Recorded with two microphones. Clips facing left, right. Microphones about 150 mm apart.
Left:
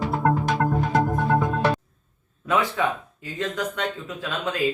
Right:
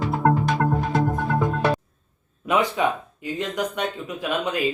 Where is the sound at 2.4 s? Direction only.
15° right (ahead or behind).